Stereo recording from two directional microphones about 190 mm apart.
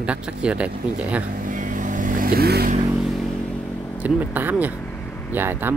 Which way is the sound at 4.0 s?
10° right (ahead or behind).